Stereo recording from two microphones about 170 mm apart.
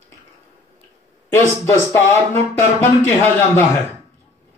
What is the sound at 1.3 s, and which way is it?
Speech, 15° left (ahead or behind).